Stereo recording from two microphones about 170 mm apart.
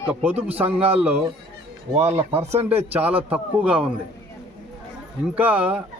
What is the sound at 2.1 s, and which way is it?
Speech, 40° right (ahead or behind).